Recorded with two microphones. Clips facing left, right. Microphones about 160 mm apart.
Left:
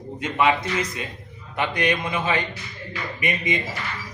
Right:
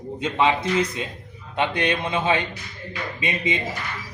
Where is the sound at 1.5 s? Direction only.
25° right (ahead or behind).